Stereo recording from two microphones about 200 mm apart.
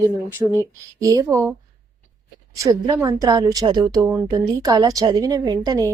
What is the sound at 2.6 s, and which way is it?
A woman's voice, 15° right (ahead or behind).